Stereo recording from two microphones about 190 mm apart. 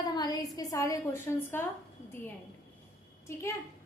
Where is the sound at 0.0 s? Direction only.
20° left (ahead or behind).